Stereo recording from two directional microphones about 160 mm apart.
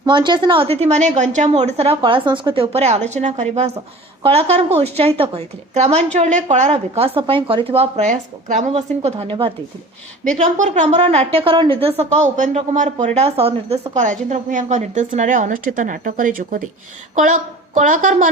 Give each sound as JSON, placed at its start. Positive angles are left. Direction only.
{"t": 0.0, "sound": "a woman's voice", "side_deg": -30}
{"t": 9.0, "sound": "a woman's voice", "side_deg": -35}
{"t": 10.4, "sound": "a woman's voice", "side_deg": -50}